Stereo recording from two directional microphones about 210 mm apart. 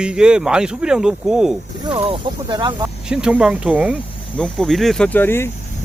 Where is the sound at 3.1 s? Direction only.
5° right (ahead or behind).